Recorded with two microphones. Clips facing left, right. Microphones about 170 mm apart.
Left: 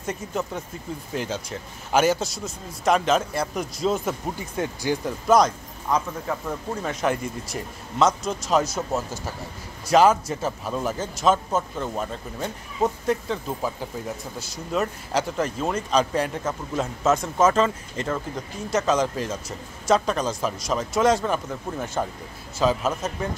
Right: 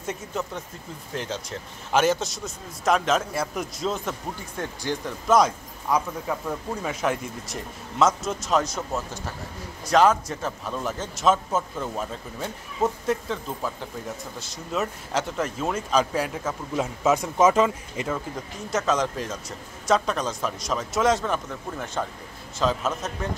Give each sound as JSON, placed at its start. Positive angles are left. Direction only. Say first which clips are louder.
{"t": 0.0, "sound": "speech", "louder": "left 2 dB", "side_deg": 0}
{"t": 5.4, "sound": "a man's voice", "louder": "left 1 dB", "side_deg": -10}
{"t": 9.8, "sound": "speech", "louder": "left 2 dB", "side_deg": 5}
{"t": 14.5, "sound": "speech", "louder": "left 2 dB", "side_deg": 0}